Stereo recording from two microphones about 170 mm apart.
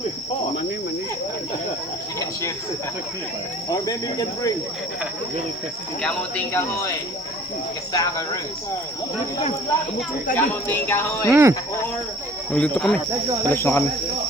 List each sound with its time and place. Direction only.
3.7 s speech: 20° left (ahead or behind)
6.0 s speech: 5° left (ahead or behind)
7.9 s speech: 20° left (ahead or behind)
10.3 s speech: 10° left (ahead or behind)
11.3 s speech: 15° right (ahead or behind)
12.5 s speech: 5° left (ahead or behind)